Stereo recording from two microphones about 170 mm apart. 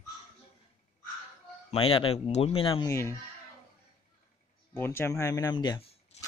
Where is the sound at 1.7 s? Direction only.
30° left (ahead or behind).